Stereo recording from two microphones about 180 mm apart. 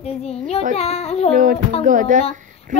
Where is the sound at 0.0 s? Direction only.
35° left (ahead or behind).